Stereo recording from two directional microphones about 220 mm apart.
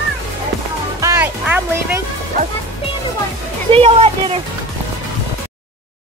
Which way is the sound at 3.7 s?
25° right (ahead or behind).